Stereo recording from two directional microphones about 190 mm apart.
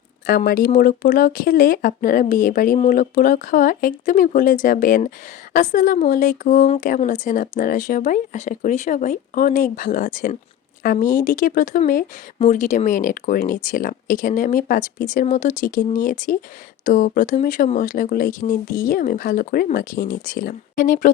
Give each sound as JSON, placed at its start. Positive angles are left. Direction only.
{"t": 0.3, "sound": "speech", "side_deg": 50}